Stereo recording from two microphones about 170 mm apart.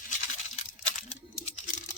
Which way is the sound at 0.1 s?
45° left (ahead or behind).